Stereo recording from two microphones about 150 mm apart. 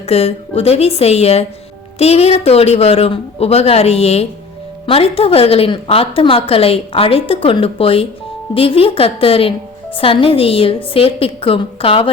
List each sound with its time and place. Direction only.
0.0 s a woman's voice: 45° left (ahead or behind)